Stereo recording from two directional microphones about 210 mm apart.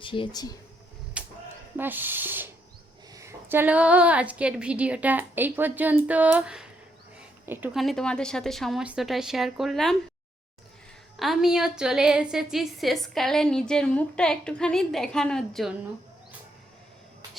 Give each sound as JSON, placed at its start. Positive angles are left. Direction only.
{"t": 0.0, "sound": "speech", "side_deg": 25}
{"t": 1.2, "sound": "a sound", "side_deg": -5}
{"t": 1.7, "sound": "a woman's voice", "side_deg": -10}
{"t": 11.2, "sound": "a woman's voice", "side_deg": 0}